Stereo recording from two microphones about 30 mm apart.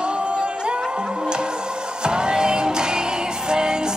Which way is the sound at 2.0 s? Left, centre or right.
Right.